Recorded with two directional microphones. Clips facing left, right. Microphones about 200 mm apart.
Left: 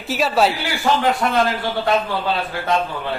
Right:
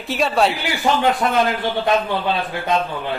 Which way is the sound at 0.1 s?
Centre (ahead or behind).